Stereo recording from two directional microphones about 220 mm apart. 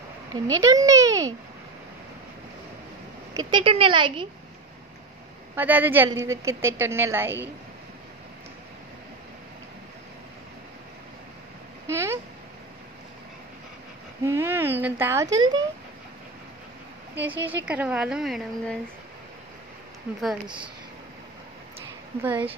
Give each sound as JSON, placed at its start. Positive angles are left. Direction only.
{"t": 0.3, "sound": "a woman's voice", "side_deg": -15}
{"t": 3.3, "sound": "speech", "side_deg": -20}
{"t": 5.6, "sound": "a woman's voice", "side_deg": -10}
{"t": 11.9, "sound": "a woman's voice", "side_deg": -10}
{"t": 14.2, "sound": "a woman's voice", "side_deg": -10}
{"t": 17.4, "sound": "a woman's voice", "side_deg": -10}
{"t": 22.2, "sound": "a woman's voice", "side_deg": -5}